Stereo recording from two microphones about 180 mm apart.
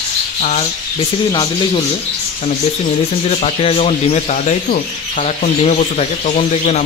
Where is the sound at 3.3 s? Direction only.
35° left (ahead or behind).